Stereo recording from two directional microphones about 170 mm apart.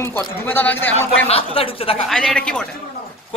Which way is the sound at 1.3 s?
35° left (ahead or behind).